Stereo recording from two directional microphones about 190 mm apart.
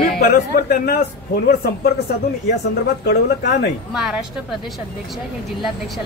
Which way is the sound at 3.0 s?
55° left (ahead or behind).